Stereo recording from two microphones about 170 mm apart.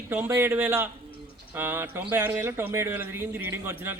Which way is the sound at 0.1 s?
15° right (ahead or behind).